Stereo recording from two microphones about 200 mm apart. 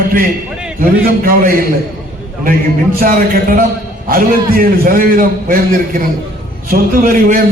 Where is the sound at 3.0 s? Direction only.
45° right (ahead or behind).